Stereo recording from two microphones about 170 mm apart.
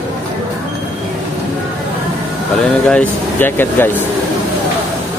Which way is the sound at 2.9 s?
10° left (ahead or behind).